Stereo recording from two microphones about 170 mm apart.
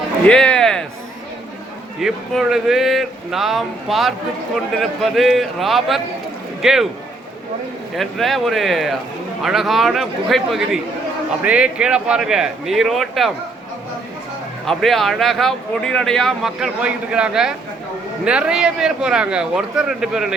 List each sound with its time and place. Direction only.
0.3 s speech: 5° left (ahead or behind)
2.0 s speech: centre (ahead or behind)
7.9 s speech: centre (ahead or behind)
14.7 s speech: centre (ahead or behind)